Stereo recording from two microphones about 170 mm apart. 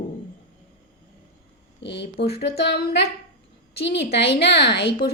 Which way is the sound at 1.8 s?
85° left.